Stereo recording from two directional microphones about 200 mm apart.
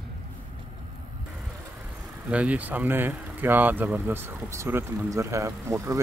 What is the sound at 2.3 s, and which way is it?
Speech, 5° right (ahead or behind).